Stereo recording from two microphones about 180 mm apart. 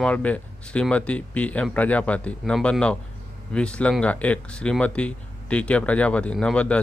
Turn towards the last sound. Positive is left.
turn(degrees=5)  # may be behind; listen again after turning